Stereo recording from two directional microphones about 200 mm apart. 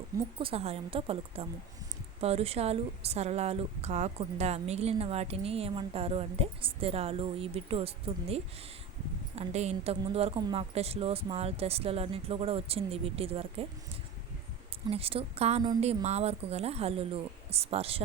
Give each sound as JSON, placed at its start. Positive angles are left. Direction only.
{"t": 0.3, "sound": "a woman's voice", "side_deg": -30}
{"t": 14.8, "sound": "a woman's voice", "side_deg": -30}